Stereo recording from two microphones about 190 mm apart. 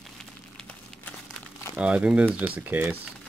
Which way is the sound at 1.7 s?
5° right (ahead or behind).